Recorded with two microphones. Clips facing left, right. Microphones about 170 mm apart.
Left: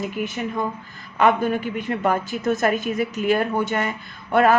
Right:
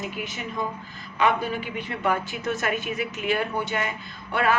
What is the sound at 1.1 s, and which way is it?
A woman's voice, 50° left (ahead or behind).